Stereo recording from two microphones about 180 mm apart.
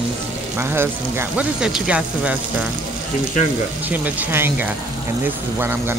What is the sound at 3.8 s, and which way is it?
Speech, 10° right (ahead or behind).